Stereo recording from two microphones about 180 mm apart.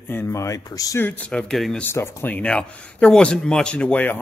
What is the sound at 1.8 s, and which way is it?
Speech, 15° left (ahead or behind).